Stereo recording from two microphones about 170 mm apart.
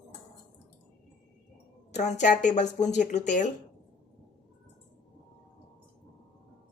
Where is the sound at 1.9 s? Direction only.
40° left (ahead or behind).